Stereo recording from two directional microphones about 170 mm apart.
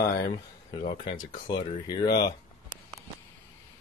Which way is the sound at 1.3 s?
25° left (ahead or behind).